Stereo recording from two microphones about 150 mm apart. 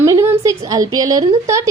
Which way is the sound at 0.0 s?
20° right (ahead or behind).